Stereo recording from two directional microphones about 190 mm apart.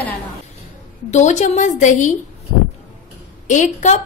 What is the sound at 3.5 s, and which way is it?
Speech, 40° left (ahead or behind).